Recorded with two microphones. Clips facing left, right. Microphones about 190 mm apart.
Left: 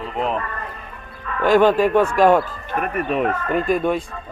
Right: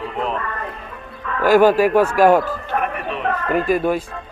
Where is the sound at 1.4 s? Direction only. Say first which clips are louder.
Right 2 dB; 5° right (ahead or behind).